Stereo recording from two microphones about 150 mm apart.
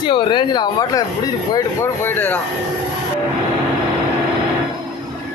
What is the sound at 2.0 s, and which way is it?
Speech, 15° left (ahead or behind).